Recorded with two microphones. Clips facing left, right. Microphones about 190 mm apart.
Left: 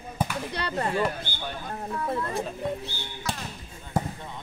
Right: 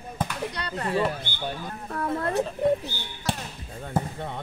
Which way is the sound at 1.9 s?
65° right (ahead or behind).